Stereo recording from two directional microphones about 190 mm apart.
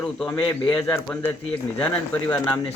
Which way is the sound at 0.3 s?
25° left (ahead or behind).